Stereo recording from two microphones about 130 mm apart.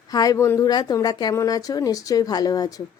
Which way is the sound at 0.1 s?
30° left (ahead or behind).